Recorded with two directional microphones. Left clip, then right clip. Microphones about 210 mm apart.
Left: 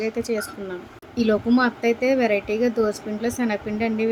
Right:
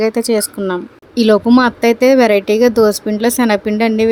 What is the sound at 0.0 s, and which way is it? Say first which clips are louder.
Speech: right 11 dB; 50° right (ahead or behind).